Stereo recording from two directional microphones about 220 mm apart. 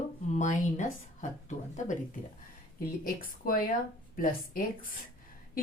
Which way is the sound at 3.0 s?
40° left (ahead or behind).